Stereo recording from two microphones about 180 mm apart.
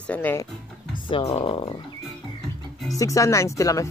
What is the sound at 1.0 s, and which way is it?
Speech, 30° left (ahead or behind).